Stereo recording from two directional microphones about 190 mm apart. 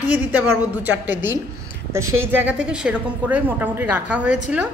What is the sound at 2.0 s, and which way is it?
Speech, 90° right.